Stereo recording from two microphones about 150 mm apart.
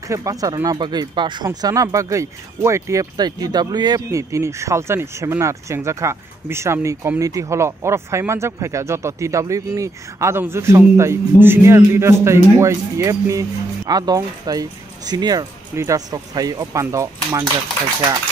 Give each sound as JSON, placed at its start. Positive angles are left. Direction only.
{"t": 0.1, "sound": "speech", "side_deg": -20}